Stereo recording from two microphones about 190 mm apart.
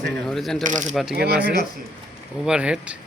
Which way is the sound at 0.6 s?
40° right (ahead or behind).